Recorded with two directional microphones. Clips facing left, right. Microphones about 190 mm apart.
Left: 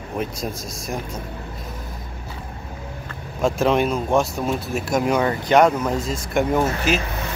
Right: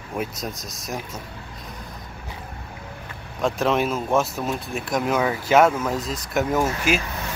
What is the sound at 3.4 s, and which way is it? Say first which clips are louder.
Speech: left 3 dB; centre (ahead or behind).